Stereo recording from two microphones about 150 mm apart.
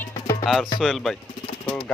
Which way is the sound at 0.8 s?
Centre (ahead or behind).